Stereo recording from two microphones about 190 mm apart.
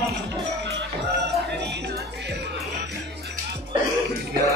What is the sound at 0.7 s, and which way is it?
Music, 65° right (ahead or behind).